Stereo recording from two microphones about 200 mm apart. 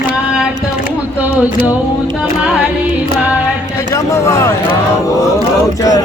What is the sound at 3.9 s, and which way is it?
Speech, 15° left (ahead or behind).